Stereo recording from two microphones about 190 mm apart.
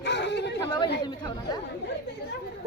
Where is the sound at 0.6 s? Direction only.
20° left (ahead or behind).